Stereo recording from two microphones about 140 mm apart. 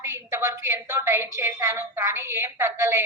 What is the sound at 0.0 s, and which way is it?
A woman's voice, 20° right (ahead or behind).